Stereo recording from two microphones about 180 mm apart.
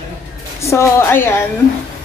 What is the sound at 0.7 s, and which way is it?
Speech, 15° left (ahead or behind).